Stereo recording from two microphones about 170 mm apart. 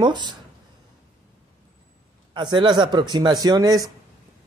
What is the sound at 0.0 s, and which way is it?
Speech, 25° right (ahead or behind).